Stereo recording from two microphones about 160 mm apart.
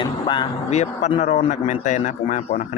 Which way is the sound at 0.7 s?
45° left (ahead or behind).